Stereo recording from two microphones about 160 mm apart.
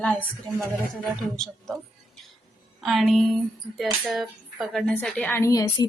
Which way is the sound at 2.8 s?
Centre (ahead or behind).